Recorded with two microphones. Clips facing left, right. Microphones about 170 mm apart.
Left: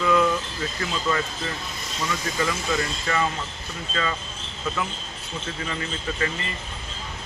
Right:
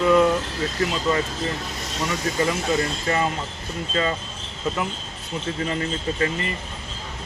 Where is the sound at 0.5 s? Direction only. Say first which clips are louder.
Right 5 dB; 80° right.